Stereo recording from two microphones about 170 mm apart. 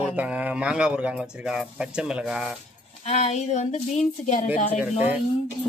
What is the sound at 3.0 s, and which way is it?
Speech, 40° left (ahead or behind).